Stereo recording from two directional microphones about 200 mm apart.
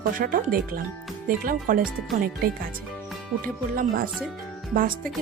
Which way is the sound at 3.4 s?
45° right (ahead or behind).